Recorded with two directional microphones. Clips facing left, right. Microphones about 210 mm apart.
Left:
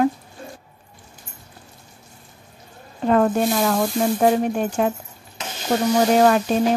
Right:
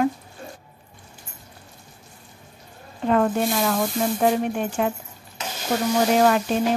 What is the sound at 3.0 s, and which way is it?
Speech, 40° left (ahead or behind).